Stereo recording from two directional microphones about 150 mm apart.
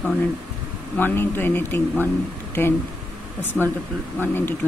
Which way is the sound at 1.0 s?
15° left (ahead or behind).